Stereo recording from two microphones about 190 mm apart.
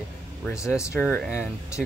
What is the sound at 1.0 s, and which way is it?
Speech, 5° left (ahead or behind).